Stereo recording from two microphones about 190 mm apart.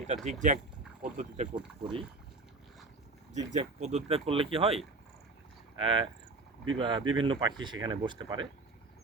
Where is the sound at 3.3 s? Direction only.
40° right (ahead or behind).